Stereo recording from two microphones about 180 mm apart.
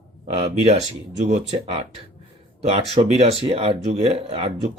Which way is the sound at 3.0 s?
35° right (ahead or behind).